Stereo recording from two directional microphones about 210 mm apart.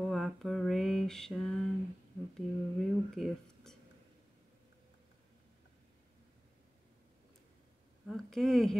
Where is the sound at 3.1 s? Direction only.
Centre (ahead or behind).